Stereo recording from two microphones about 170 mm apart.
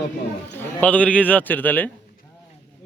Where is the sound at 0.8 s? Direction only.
10° left (ahead or behind).